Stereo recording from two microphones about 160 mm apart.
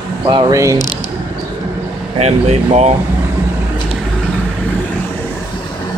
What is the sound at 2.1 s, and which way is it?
Speech, 45° right (ahead or behind).